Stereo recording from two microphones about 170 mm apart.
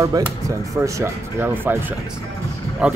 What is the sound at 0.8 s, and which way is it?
Speech, 15° right (ahead or behind).